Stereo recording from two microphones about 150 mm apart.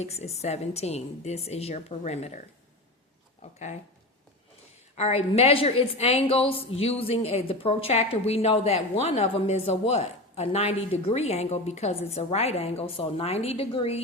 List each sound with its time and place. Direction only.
0.0 s a woman's voice: 45° left (ahead or behind)
3.4 s a woman's voice: 45° left (ahead or behind)
4.9 s a woman's voice: 45° left (ahead or behind)